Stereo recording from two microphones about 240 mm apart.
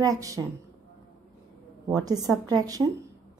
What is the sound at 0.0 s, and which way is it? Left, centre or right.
Speech, centre.